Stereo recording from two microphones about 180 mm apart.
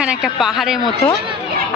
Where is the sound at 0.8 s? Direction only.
25° left (ahead or behind).